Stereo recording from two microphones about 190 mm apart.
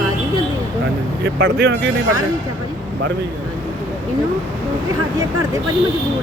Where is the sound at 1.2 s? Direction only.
75° right (ahead or behind).